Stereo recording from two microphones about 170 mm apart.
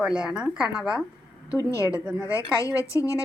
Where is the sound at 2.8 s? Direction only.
20° left (ahead or behind).